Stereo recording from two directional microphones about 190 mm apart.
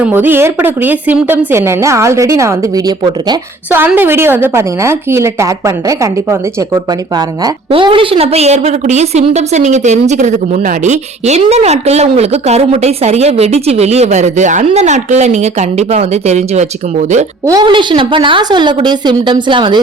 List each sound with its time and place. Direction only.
0.0 s a woman's voice: 10° right (ahead or behind)
3.8 s a woman's voice: 10° right (ahead or behind); by 17.2 s 40° right (ahead or behind)
17.4 s a woman's voice: 20° right (ahead or behind)